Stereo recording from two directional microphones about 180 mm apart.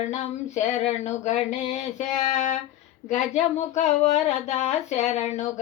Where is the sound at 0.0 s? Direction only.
40° left (ahead or behind).